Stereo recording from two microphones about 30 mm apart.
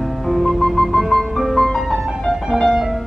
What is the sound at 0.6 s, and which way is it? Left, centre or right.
Music, centre.